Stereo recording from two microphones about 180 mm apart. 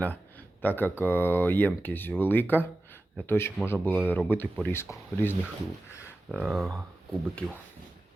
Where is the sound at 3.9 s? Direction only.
5° right (ahead or behind).